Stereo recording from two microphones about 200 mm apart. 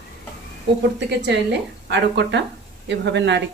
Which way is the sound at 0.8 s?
60° right (ahead or behind).